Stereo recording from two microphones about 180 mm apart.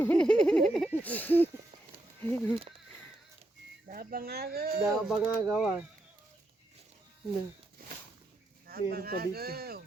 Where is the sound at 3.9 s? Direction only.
55° right (ahead or behind).